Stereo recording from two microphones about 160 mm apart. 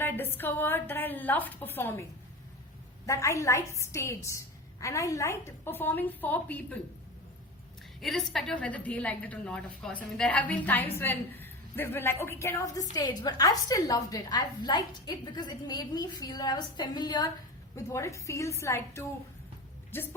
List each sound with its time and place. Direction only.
0.0 s a woman's voice: 15° left (ahead or behind)
3.1 s a woman's voice: 20° left (ahead or behind)
8.0 s a woman's voice: centre (ahead or behind); by 19.0 s 20° left (ahead or behind)